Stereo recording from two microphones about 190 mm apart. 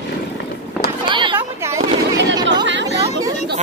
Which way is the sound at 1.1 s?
25° right (ahead or behind).